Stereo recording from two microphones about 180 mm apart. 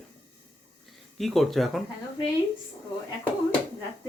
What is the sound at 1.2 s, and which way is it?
Speech, centre (ahead or behind).